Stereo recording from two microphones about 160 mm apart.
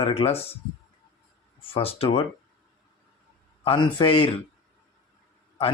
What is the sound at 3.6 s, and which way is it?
Speech, 30° left (ahead or behind).